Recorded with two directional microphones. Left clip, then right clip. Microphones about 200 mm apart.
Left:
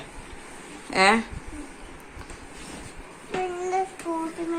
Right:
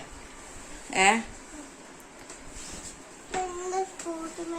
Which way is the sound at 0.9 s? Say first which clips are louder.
Left 3 dB; 5° right (ahead or behind).